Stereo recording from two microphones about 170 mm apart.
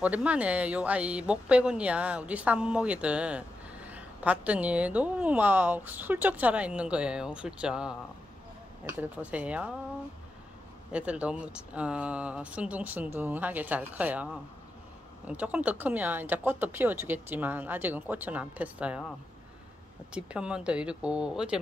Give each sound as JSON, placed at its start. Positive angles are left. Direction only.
{"t": 0.0, "sound": "speech", "side_deg": -10}
{"t": 9.0, "sound": "speech", "side_deg": -10}
{"t": 10.9, "sound": "speech", "side_deg": -5}
{"t": 20.1, "sound": "speech", "side_deg": -5}